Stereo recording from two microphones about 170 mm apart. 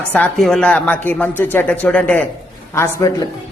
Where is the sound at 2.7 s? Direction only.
20° left (ahead or behind).